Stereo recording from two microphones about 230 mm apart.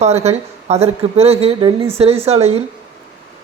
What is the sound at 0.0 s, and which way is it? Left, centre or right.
Speech, right.